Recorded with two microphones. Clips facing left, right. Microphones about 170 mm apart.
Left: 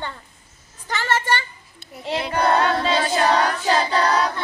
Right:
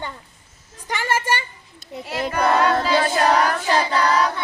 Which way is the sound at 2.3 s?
30° left (ahead or behind).